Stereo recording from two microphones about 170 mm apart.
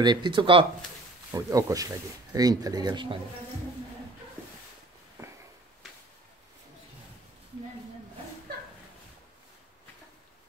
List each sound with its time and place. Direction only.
0.0 s speech: 25° right (ahead or behind)
1.3 s speech: 20° right (ahead or behind)